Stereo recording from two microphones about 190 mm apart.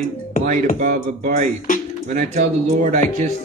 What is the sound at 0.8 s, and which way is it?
Music, 45° right (ahead or behind).